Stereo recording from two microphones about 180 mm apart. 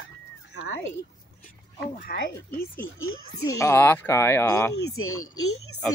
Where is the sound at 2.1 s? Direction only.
55° left (ahead or behind).